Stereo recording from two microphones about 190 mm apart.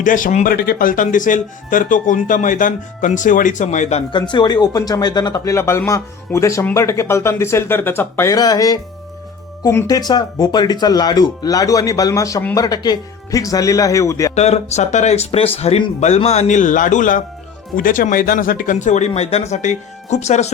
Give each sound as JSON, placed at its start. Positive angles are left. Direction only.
{"t": 0.0, "sound": "speech", "side_deg": 45}
{"t": 14.3, "sound": "speech", "side_deg": 35}